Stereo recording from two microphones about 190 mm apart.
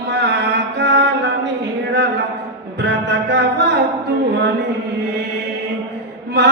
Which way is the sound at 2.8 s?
65° right (ahead or behind).